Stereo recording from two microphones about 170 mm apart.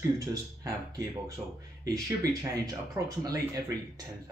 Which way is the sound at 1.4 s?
5° right (ahead or behind).